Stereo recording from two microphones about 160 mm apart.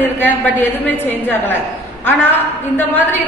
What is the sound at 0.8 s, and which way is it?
Speech, 15° left (ahead or behind).